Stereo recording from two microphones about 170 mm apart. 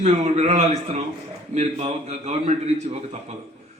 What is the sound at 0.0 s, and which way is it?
A man's voice, 40° right (ahead or behind).